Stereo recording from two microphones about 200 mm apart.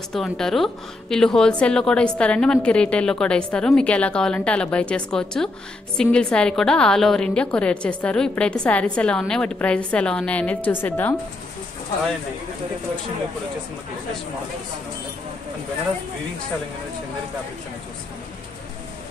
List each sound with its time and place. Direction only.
0.1 s a woman's voice: centre (ahead or behind)